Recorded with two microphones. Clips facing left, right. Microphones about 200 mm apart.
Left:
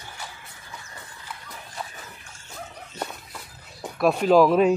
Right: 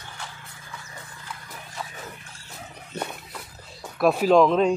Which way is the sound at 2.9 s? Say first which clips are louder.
Right 2 dB; 60° right (ahead or behind).